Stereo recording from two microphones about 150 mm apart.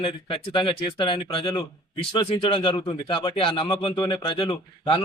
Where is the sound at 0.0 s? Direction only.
35° left (ahead or behind).